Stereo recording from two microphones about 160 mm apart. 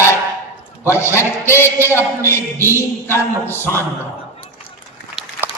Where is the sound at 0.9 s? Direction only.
15° left (ahead or behind).